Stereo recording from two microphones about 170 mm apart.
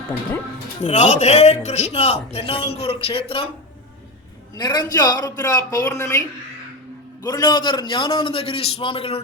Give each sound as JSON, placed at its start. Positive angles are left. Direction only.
{"t": 0.8, "sound": "speech", "side_deg": 40}
{"t": 4.5, "sound": "a man's voice", "side_deg": 25}